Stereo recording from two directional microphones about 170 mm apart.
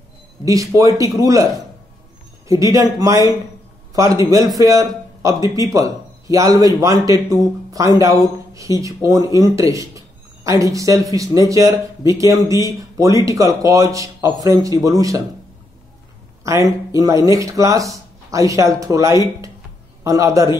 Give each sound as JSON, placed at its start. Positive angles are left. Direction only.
{"t": 0.7, "sound": "speech", "side_deg": -20}
{"t": 2.4, "sound": "a man's voice", "side_deg": -20}
{"t": 16.4, "sound": "a man's voice", "side_deg": -20}